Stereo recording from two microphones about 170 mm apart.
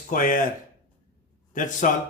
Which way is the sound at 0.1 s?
50° left (ahead or behind).